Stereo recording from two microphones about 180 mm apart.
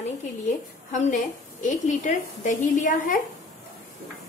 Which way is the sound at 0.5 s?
45° left (ahead or behind).